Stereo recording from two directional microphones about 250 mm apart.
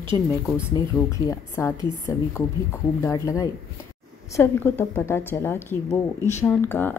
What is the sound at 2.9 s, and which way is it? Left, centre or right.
A woman's voice, centre.